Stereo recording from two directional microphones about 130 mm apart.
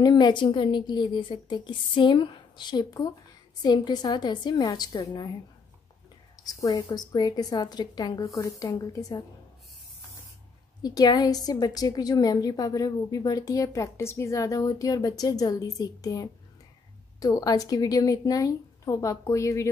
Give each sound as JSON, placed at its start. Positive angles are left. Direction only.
{"t": 0.0, "sound": "a woman's voice", "side_deg": 35}
{"t": 6.4, "sound": "a woman's voice", "side_deg": 30}
{"t": 10.8, "sound": "a woman's voice", "side_deg": 30}